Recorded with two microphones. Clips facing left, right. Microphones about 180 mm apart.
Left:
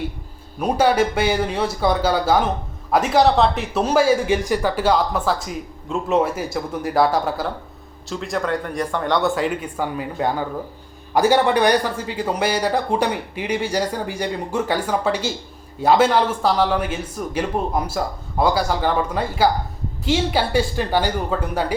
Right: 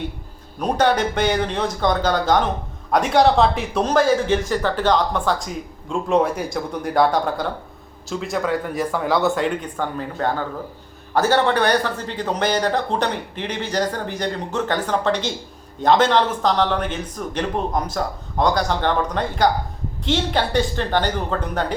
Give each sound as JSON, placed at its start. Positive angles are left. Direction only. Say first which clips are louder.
{"t": 0.6, "sound": "speech", "louder": "left 1 dB", "side_deg": 5}